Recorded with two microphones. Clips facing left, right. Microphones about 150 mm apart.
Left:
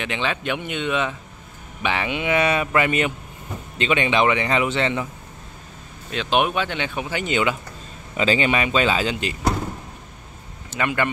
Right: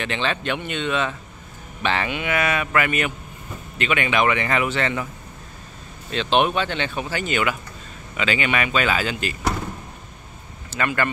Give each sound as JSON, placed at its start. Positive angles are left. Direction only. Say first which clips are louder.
{"t": 0.0, "sound": "speech", "louder": "even", "side_deg": 10}
{"t": 6.1, "sound": "speech", "louder": "right 1 dB", "side_deg": 10}
{"t": 8.2, "sound": "speech", "louder": "left 3 dB", "side_deg": 30}
{"t": 10.7, "sound": "speech", "louder": "even", "side_deg": 15}